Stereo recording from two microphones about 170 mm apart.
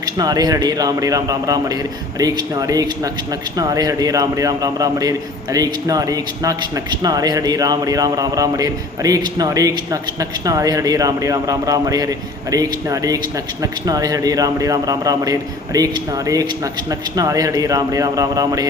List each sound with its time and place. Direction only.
0.0 s a man's voice: 20° right (ahead or behind)